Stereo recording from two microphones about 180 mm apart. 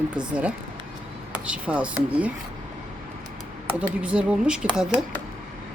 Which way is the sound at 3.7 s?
5° right (ahead or behind).